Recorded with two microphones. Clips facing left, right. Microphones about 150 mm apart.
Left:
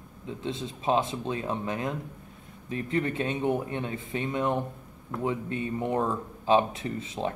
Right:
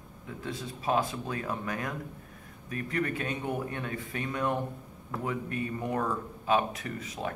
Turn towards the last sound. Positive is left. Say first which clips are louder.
# left 4 dB
turn(degrees=25)  # may be behind; listen again after turning